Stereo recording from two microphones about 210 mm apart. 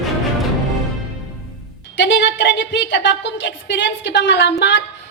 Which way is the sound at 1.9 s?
60° left (ahead or behind).